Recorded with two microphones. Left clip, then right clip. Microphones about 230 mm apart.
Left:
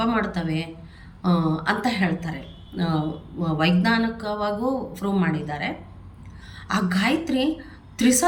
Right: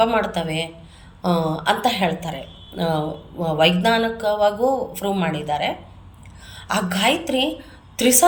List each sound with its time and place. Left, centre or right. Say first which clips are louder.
0.0 s a woman's voice: right 6 dB; centre